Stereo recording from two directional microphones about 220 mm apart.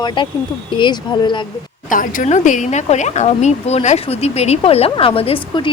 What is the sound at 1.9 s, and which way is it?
Speech, 35° left (ahead or behind).